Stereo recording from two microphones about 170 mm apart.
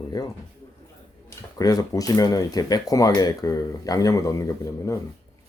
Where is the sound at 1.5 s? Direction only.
20° left (ahead or behind).